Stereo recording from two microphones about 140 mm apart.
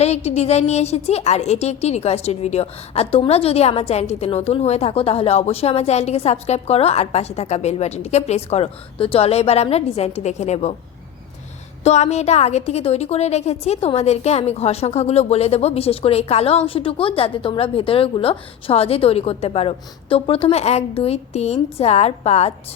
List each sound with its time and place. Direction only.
0.0 s a woman's voice: 50° left (ahead or behind)
11.8 s a woman's voice: 50° left (ahead or behind)